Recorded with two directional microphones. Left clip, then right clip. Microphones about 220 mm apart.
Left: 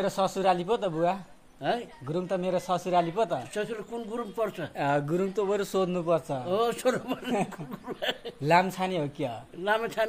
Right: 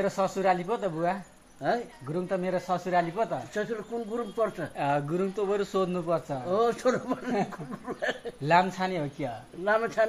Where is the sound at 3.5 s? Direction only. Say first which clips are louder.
Right 1 dB; 5° left (ahead or behind).